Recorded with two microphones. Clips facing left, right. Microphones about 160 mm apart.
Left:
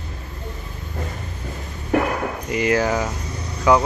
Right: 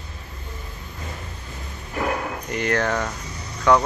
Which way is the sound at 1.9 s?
70° left (ahead or behind).